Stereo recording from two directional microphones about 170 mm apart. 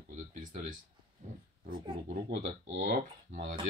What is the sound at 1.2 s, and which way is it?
Speech, 50° right (ahead or behind).